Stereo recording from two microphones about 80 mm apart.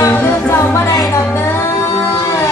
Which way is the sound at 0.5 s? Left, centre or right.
Left.